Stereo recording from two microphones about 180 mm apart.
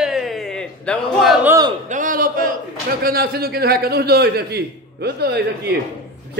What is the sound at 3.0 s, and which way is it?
A man's voice, 55° right (ahead or behind).